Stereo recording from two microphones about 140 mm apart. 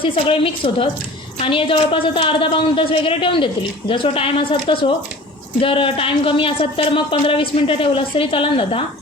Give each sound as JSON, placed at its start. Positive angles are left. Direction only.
{"t": 0.0, "sound": "speech", "side_deg": 40}